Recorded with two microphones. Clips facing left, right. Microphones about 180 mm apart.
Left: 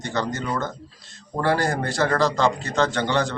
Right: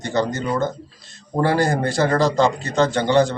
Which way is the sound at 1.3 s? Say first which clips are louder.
Right 4 dB; 15° right (ahead or behind).